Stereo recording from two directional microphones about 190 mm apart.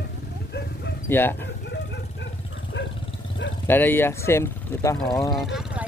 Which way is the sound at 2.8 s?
70° left (ahead or behind).